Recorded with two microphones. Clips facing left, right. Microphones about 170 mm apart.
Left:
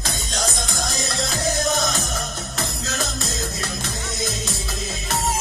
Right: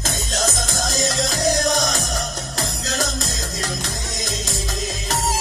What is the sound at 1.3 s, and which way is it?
Music, 40° right (ahead or behind).